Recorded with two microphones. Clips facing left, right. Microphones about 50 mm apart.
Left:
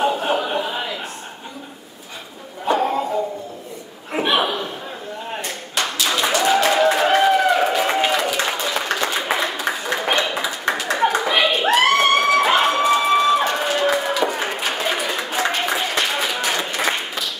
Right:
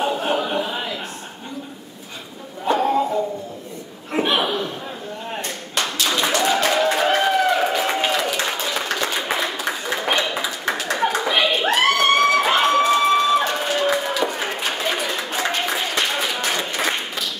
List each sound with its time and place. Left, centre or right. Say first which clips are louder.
0.0 s a sound: left 2 dB; centre
2.6 s music: right 1 dB; centre
4.1 s chuckle: left 1 dB; centre
5.3 s clapping: even; centre